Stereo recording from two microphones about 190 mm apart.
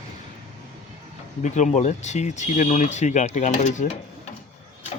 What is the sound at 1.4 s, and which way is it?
Speech, 40° left (ahead or behind).